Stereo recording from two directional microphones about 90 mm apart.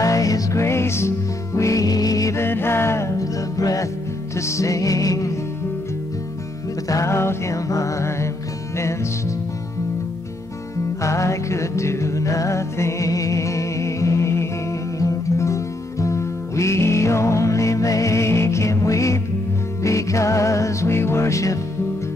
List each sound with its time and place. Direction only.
0.0 s music: 40° left (ahead or behind)
2.4 s music: 25° left (ahead or behind)
6.9 s music: 35° left (ahead or behind)
11.0 s music: 35° left (ahead or behind)